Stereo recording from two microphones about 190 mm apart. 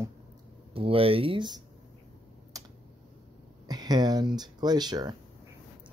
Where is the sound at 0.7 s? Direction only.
30° right (ahead or behind).